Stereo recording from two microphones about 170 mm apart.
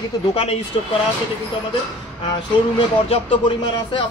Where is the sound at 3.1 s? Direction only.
30° left (ahead or behind).